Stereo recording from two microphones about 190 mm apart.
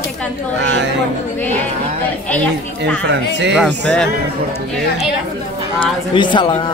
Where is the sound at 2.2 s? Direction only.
5° left (ahead or behind).